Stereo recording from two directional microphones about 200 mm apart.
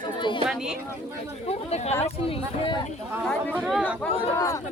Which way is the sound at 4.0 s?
10° left (ahead or behind).